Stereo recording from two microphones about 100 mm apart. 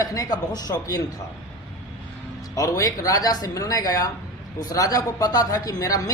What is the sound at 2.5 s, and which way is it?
Speech, 35° left (ahead or behind).